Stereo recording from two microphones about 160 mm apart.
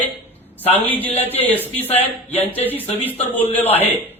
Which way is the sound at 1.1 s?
40° left (ahead or behind).